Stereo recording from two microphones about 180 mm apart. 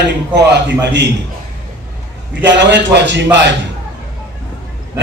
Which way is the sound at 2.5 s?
75° right (ahead or behind).